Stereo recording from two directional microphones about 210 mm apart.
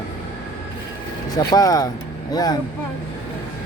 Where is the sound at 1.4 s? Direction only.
15° left (ahead or behind).